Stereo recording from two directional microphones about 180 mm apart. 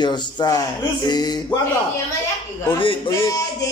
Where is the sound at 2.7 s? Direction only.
30° left (ahead or behind).